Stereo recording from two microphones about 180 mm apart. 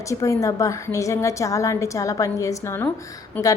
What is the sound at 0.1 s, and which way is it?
A woman's voice, 15° left (ahead or behind).